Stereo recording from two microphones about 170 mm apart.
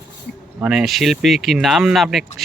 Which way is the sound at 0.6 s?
5° right (ahead or behind).